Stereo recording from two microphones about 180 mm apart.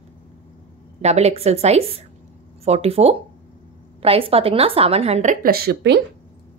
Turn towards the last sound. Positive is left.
turn(degrees=-70)  # may be behind; listen again after turning